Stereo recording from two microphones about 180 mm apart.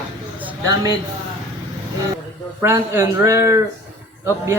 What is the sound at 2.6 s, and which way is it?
Speech, 15° right (ahead or behind).